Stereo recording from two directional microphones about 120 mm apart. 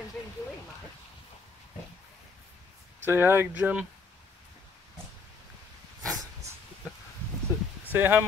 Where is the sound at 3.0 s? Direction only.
20° right (ahead or behind).